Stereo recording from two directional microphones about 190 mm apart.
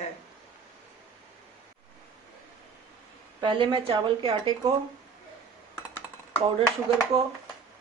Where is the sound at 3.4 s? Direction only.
25° right (ahead or behind).